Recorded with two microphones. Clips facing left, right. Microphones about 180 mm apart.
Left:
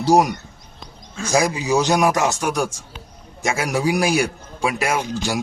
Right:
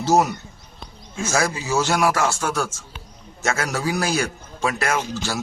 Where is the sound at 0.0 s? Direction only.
15° left (ahead or behind).